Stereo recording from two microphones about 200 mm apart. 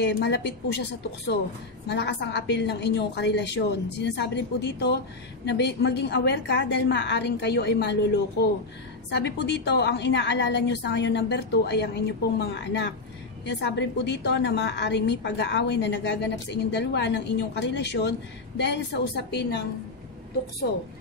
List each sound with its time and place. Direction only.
0.0 s a woman's voice: 60° left (ahead or behind)